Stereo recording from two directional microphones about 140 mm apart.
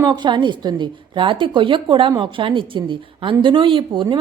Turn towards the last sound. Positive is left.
turn(degrees=-35)  # may be behind; listen again after turning